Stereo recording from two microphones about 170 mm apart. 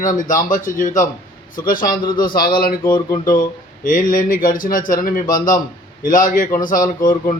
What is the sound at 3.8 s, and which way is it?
A man's voice, 50° left (ahead or behind).